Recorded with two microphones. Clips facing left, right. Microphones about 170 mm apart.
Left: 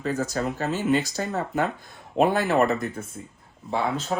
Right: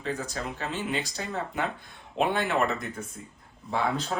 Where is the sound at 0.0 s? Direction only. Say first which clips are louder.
Left 6 dB; 40° left (ahead or behind).